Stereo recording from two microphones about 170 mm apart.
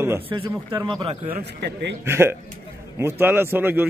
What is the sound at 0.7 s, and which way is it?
Speech, 25° right (ahead or behind).